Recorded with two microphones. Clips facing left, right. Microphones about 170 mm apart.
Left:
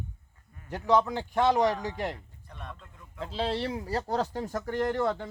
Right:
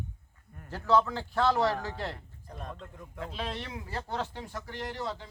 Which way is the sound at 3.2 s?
30° left (ahead or behind).